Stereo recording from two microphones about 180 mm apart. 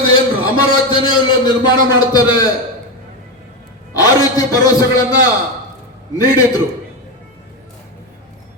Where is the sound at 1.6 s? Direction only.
25° left (ahead or behind).